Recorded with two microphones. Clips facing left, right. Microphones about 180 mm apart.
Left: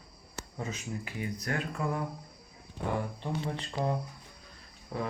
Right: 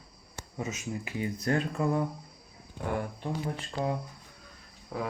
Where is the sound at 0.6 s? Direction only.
20° right (ahead or behind).